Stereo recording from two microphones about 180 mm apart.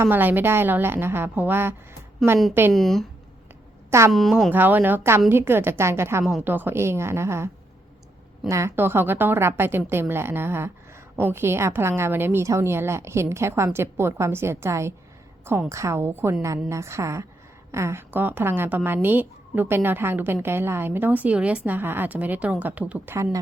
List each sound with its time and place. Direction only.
0.0 s a woman's voice: 10° right (ahead or behind)
2.2 s speech: centre (ahead or behind)
4.1 s speech: centre (ahead or behind)
4.5 s a woman's voice: 10° right (ahead or behind)